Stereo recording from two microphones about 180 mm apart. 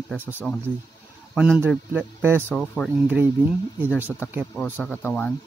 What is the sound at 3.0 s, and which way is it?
Speech, 10° right (ahead or behind).